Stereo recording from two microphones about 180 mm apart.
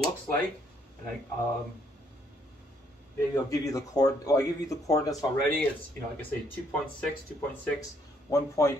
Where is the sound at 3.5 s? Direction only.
20° left (ahead or behind).